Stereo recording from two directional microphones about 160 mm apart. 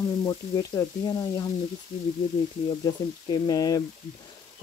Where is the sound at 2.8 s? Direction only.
25° left (ahead or behind).